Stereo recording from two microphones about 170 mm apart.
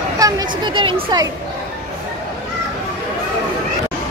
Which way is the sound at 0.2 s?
25° right (ahead or behind).